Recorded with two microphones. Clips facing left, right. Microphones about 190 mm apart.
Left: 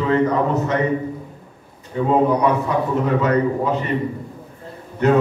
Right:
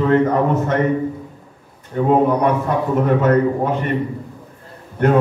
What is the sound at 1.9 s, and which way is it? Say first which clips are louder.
Speech: right 2 dB; 55° right (ahead or behind).